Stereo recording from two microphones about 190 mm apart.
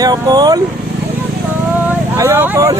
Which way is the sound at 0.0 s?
20° right (ahead or behind).